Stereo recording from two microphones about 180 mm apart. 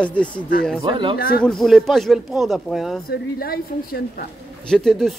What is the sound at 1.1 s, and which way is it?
Speech, 60° left (ahead or behind).